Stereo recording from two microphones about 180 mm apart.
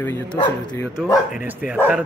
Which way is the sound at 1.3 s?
5° right (ahead or behind).